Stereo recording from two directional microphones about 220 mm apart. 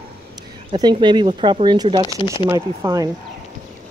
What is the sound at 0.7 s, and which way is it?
Speech, 20° right (ahead or behind).